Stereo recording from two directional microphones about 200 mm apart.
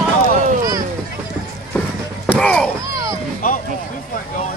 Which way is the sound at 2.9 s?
15° right (ahead or behind).